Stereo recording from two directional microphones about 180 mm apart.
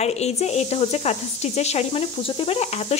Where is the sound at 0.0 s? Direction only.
35° left (ahead or behind).